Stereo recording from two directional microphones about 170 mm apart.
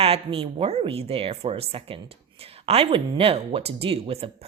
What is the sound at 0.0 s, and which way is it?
Speech, 35° right (ahead or behind).